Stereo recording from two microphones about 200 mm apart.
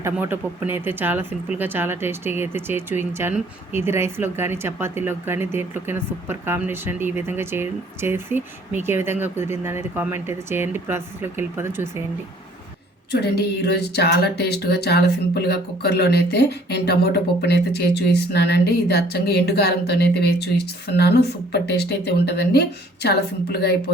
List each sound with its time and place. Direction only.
0.0 s speech: 10° right (ahead or behind)
13.1 s speech: 55° left (ahead or behind)